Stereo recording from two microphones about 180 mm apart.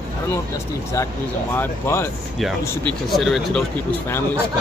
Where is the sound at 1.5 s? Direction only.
15° left (ahead or behind).